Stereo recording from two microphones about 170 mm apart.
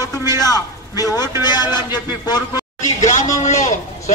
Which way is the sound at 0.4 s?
20° left (ahead or behind).